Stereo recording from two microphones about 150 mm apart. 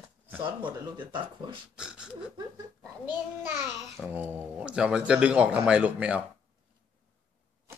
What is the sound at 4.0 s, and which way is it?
Speech, 10° right (ahead or behind).